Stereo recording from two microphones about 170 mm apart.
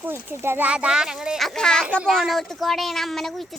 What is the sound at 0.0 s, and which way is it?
Speech, 15° right (ahead or behind).